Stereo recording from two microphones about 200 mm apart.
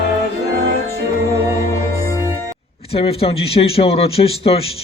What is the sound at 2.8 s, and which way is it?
A man's voice, 30° left (ahead or behind).